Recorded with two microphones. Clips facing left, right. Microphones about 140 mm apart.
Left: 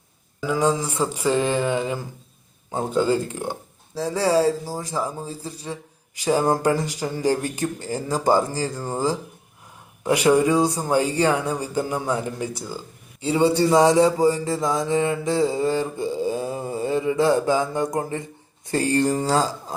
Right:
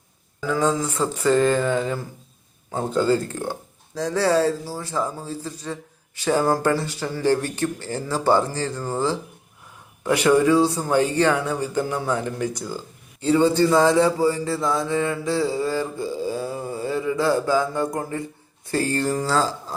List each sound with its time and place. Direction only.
0.4 s speech: 10° left (ahead or behind)
13.2 s mantra: 10° left (ahead or behind)
18.7 s speech: 20° left (ahead or behind)